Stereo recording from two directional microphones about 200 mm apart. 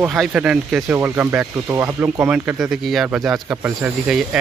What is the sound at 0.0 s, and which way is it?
Speech, 5° right (ahead or behind).